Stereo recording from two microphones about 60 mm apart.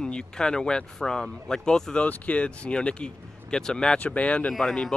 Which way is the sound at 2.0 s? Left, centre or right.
Left.